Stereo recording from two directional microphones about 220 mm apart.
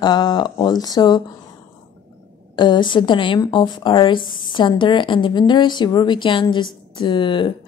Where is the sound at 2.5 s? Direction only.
20° left (ahead or behind).